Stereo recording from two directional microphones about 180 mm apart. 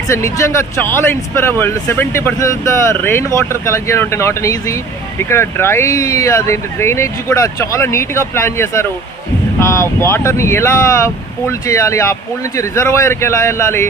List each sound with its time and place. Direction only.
0.1 s speech: 15° left (ahead or behind)